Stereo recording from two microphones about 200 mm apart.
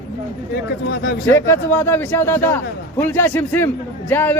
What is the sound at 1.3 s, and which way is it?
A man's voice, 10° left (ahead or behind).